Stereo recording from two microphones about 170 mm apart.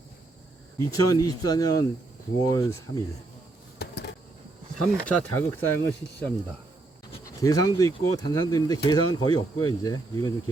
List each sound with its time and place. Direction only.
0.8 s speech: 20° left (ahead or behind)
3.8 s a sound: 75° left (ahead or behind)
5.0 s speech: 10° left (ahead or behind)
7.4 s speech: 20° left (ahead or behind)